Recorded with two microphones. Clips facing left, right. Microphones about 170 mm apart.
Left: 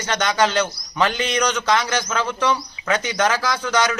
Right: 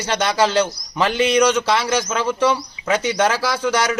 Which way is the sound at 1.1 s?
10° right (ahead or behind).